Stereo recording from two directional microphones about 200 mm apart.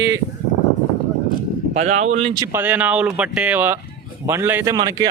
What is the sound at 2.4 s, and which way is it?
Speech, 10° right (ahead or behind).